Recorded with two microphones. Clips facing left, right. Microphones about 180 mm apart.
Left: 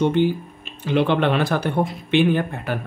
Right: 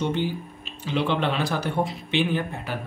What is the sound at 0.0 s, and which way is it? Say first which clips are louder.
Speech: left 7 dB; 55° left (ahead or behind).